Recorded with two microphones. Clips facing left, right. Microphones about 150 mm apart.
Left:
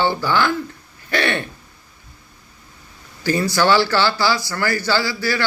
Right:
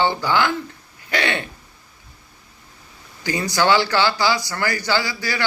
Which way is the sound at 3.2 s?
15° right (ahead or behind).